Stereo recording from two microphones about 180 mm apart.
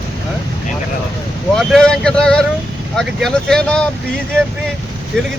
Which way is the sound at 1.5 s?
5° left (ahead or behind).